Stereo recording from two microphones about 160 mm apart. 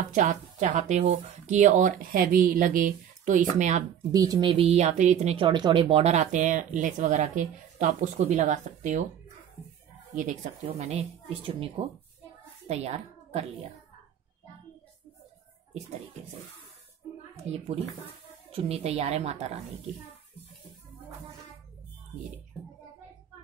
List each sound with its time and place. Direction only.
0.1 s speech: 50° right (ahead or behind)
4.1 s speech: 25° right (ahead or behind); by 9.0 s 50° right (ahead or behind)
10.1 s a woman's voice: 50° right (ahead or behind)
18.5 s a woman's voice: 40° right (ahead or behind)